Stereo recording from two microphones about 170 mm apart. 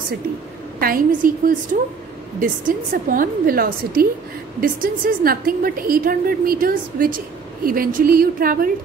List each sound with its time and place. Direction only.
0.7 s a woman's voice: 60° right (ahead or behind)